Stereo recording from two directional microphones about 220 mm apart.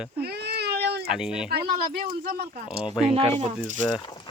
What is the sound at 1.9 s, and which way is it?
Speech, 40° right (ahead or behind).